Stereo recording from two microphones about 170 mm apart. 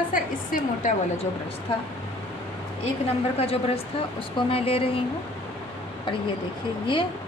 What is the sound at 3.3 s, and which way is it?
Speech, 35° left (ahead or behind).